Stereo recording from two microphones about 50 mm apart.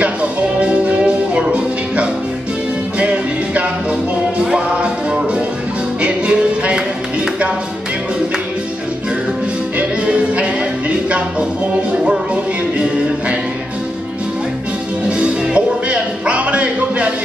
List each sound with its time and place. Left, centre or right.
0.0 s music: right
9.8 s music: right
15.0 s music: right